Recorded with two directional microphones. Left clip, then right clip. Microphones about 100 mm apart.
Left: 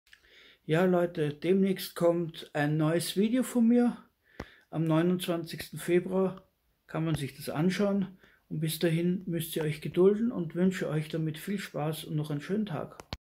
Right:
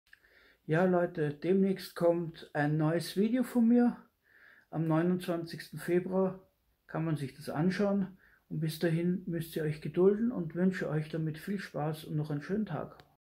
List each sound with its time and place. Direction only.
0.7 s speech: 20° left (ahead or behind)